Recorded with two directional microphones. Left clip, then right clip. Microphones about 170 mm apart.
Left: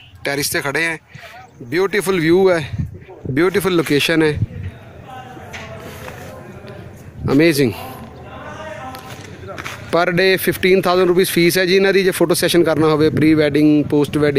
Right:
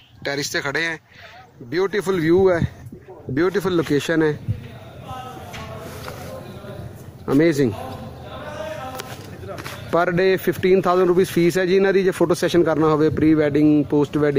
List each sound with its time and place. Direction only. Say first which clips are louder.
0.2 s speech: left 4 dB; 10° left (ahead or behind)
7.2 s speech: left 4 dB; 15° left (ahead or behind)
9.8 s speech: left 3 dB; 15° left (ahead or behind)